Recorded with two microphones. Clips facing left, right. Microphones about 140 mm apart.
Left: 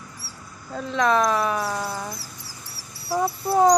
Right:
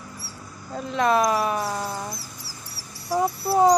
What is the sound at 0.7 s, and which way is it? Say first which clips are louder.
Speech: even; 5° right (ahead or behind).